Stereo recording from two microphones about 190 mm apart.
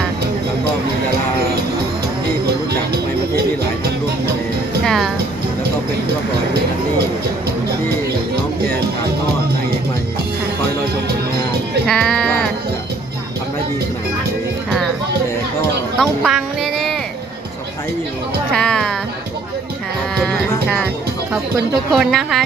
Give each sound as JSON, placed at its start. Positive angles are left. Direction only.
{"t": 2.5, "sound": "music", "side_deg": -55}
{"t": 4.9, "sound": "music", "side_deg": 0}
{"t": 11.9, "sound": "music", "side_deg": 5}
{"t": 16.0, "sound": "music", "side_deg": 0}
{"t": 18.5, "sound": "music", "side_deg": 5}
{"t": 20.1, "sound": "music", "side_deg": 0}
{"t": 21.9, "sound": "a woman's voice", "side_deg": 0}